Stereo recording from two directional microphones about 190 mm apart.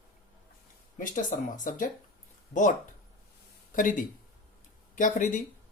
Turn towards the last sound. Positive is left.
turn(degrees=40)  # may be behind; listen again after turning